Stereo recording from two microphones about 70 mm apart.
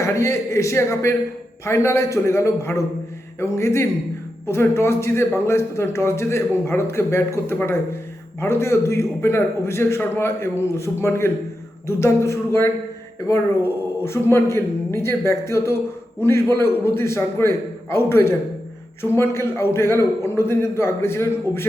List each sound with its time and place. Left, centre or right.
0.0 s a man's voice: left